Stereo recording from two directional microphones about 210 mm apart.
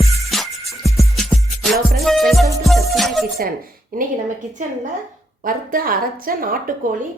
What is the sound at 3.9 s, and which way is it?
Speech, 40° right (ahead or behind).